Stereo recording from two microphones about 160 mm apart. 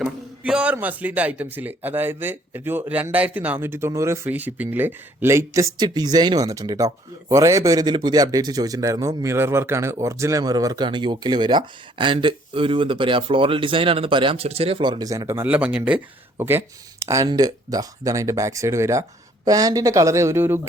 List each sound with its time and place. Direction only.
0.0 s a man's voice: 5° right (ahead or behind)